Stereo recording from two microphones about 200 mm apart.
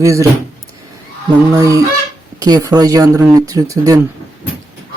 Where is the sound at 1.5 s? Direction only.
15° right (ahead or behind).